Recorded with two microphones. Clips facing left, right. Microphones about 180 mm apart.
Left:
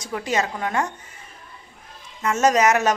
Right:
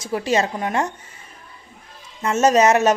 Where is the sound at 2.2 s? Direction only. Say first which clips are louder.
Right 3 dB; 25° right (ahead or behind).